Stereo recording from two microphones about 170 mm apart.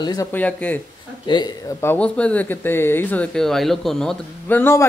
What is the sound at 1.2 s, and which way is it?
Speech, 25° left (ahead or behind).